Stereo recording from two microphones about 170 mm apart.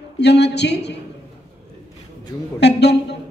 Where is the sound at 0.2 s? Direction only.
80° left.